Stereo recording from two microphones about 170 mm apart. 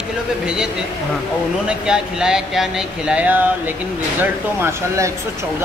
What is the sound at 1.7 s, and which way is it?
A man's voice, 5° right (ahead or behind).